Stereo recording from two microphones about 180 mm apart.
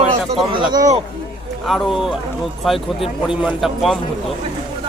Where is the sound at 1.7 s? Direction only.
Centre (ahead or behind).